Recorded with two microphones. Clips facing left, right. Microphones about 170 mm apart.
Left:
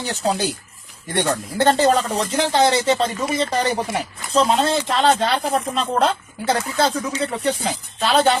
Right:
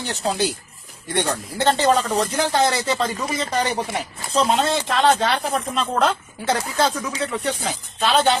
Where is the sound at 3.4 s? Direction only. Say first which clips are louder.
Left 2 dB; 30° left (ahead or behind).